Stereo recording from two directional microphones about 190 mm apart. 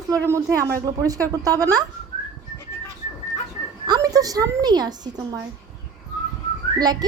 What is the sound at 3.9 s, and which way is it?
A woman's voice, 20° right (ahead or behind).